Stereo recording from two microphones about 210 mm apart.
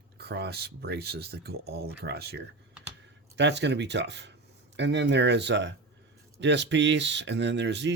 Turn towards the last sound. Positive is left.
turn(degrees=-55)  # may be behind; listen again after turning